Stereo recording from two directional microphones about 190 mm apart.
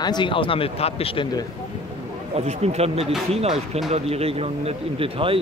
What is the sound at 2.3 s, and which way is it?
Speech, 35° right (ahead or behind).